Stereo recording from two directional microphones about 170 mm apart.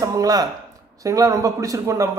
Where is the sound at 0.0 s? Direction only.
20° right (ahead or behind).